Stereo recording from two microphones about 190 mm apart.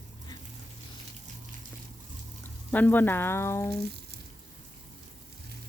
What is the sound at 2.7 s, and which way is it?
Speech, 10° left (ahead or behind).